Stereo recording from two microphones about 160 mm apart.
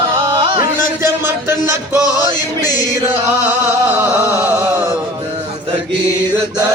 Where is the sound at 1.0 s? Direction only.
15° right (ahead or behind).